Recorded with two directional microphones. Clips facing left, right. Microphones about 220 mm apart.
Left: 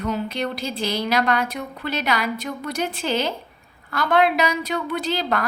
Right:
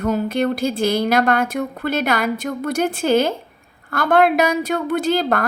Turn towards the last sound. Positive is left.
turn(degrees=-50)  # may be behind; listen again after turning